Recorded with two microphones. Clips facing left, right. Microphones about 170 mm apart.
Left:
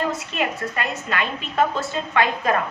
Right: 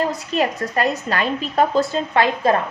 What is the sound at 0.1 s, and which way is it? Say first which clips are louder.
A woman's voice: right 4 dB; 35° right (ahead or behind).